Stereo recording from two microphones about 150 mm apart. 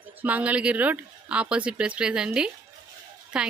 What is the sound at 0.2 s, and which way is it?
Speech, 10° right (ahead or behind).